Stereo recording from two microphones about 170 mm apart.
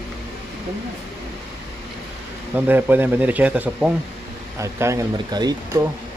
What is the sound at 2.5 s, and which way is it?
Speech, 10° right (ahead or behind).